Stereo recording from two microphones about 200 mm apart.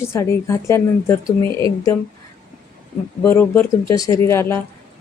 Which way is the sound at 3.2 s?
10° left (ahead or behind).